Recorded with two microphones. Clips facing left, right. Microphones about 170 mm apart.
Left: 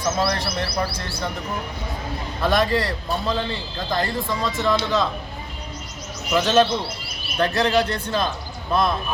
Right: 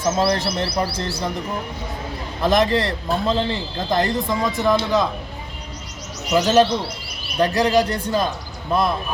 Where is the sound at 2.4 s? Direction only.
20° right (ahead or behind).